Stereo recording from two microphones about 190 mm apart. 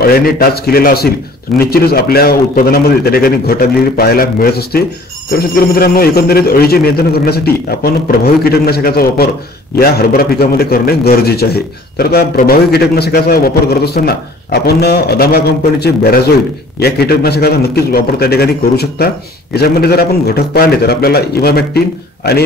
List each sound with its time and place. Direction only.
0.0 s a man's voice: 50° left (ahead or behind)